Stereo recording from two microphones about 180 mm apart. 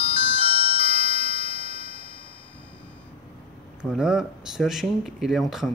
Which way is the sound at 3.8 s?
5° right (ahead or behind).